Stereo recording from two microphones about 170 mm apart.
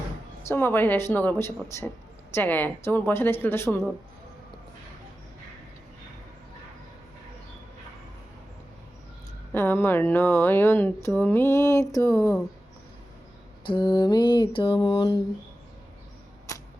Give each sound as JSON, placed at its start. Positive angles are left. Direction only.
{"t": 0.4, "sound": "speech", "side_deg": 15}
{"t": 9.5, "sound": "speech", "side_deg": 10}
{"t": 13.7, "sound": "mantra", "side_deg": 25}